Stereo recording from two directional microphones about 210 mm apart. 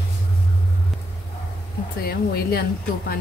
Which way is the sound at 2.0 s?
50° left (ahead or behind).